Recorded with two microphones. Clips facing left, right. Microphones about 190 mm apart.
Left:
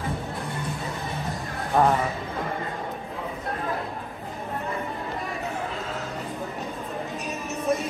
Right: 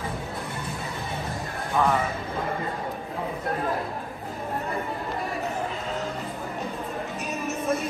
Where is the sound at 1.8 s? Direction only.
50° left (ahead or behind).